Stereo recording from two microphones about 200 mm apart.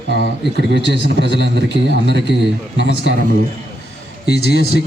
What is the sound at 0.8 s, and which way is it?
Speech, 60° left (ahead or behind).